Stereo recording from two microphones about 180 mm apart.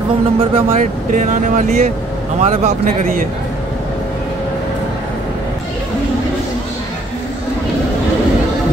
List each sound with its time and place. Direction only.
0.4 s speech: 30° right (ahead or behind)
1.1 s speech: 45° right (ahead or behind)